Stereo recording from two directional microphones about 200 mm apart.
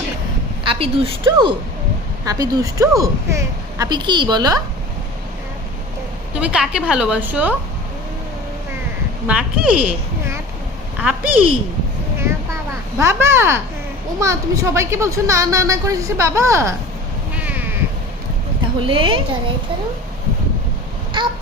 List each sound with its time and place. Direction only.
0.7 s a woman's voice: 25° right (ahead or behind)
6.3 s a woman's voice: 5° right (ahead or behind)
9.2 s a woman's voice: 5° right (ahead or behind)
13.0 s a woman's voice: 15° right (ahead or behind)
17.3 s crow: 10° right (ahead or behind)
18.9 s speech: 25° right (ahead or behind)